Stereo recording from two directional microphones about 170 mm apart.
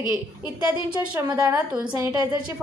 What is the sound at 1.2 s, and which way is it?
Speech, 20° right (ahead or behind).